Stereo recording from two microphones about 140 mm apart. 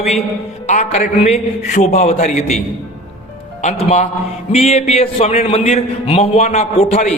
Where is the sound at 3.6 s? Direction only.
55° left (ahead or behind).